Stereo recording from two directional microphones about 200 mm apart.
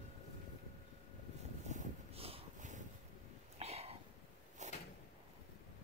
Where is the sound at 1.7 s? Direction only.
30° right (ahead or behind).